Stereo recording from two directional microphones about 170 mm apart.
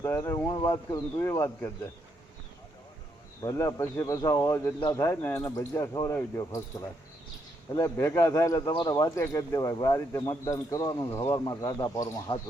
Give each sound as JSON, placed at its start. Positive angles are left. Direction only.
{"t": 0.0, "sound": "speech", "side_deg": 15}
{"t": 3.4, "sound": "speech", "side_deg": 20}